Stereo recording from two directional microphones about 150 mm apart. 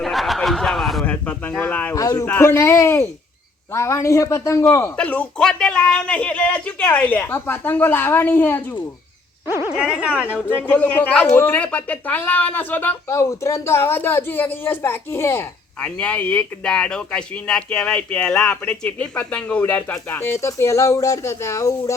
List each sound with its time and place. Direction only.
0.0 s a sound: centre (ahead or behind)
2.0 s speech: 20° left (ahead or behind)
9.6 s speech: 5° right (ahead or behind)
10.5 s speech: 10° left (ahead or behind)